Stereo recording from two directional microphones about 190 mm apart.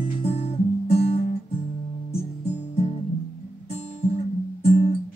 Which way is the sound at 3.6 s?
35° left (ahead or behind).